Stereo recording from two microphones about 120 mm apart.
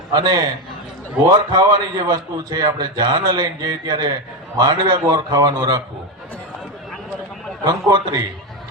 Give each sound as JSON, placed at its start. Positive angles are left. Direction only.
{"t": 0.1, "sound": "a man's voice", "side_deg": -40}
{"t": 1.5, "sound": "a man's voice", "side_deg": -35}
{"t": 7.6, "sound": "a man's voice", "side_deg": -35}